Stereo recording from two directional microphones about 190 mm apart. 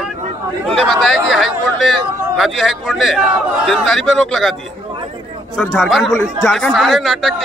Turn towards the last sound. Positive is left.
turn(degrees=0)  # may be behind; listen again after turning